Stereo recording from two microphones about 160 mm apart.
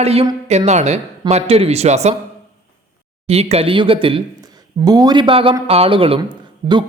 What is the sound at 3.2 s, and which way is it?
Speech, 40° right (ahead or behind).